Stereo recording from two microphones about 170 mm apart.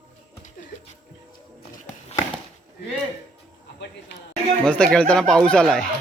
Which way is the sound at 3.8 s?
90° left.